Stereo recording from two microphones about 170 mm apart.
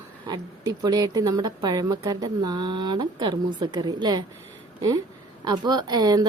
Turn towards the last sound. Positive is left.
turn(degrees=-25)  # may be behind; listen again after turning